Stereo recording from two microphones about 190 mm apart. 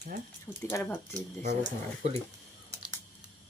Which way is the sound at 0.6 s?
10° left (ahead or behind).